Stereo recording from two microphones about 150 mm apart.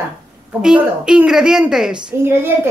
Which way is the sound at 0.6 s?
5° right (ahead or behind).